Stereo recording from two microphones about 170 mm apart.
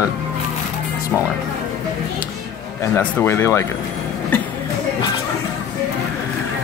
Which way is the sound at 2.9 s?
15° left (ahead or behind).